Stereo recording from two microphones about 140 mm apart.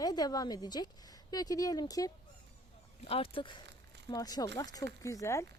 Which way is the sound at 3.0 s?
40° left (ahead or behind).